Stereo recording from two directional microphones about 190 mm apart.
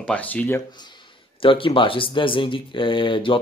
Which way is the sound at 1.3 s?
30° left (ahead or behind).